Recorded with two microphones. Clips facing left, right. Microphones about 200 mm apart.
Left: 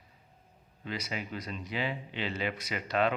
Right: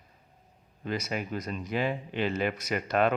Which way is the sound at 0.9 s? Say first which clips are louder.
Right 5 dB; 45° right (ahead or behind).